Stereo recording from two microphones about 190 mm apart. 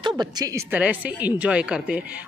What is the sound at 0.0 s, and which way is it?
Speech, 20° right (ahead or behind).